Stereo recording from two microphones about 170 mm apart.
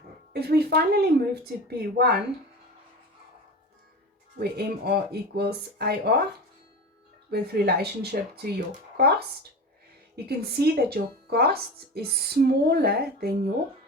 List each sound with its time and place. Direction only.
0.3 s speech: 70° right (ahead or behind)
4.4 s speech: 70° right (ahead or behind)
7.3 s speech: 70° right (ahead or behind)
10.2 s speech: 65° right (ahead or behind)